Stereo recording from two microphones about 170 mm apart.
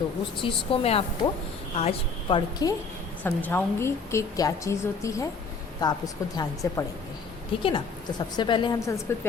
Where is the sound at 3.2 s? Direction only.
10° left (ahead or behind).